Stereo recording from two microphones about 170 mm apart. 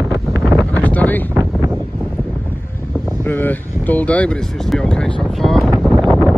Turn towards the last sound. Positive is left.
turn(degrees=-5)  # may be behind; listen again after turning